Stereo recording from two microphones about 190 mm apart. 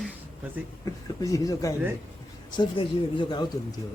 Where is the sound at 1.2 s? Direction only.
15° left (ahead or behind).